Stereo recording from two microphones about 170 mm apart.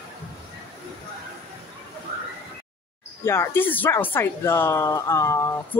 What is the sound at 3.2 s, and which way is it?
Speech, 15° left (ahead or behind).